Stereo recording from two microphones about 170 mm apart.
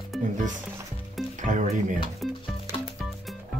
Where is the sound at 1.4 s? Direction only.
45° right (ahead or behind).